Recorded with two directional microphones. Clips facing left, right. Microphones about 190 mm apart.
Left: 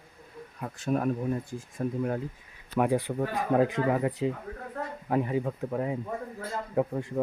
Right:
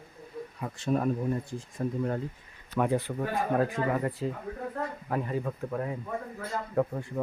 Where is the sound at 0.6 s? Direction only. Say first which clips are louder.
Even; centre (ahead or behind).